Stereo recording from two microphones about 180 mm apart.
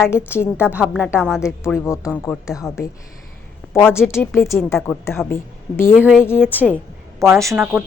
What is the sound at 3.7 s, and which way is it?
A woman's voice, 15° left (ahead or behind).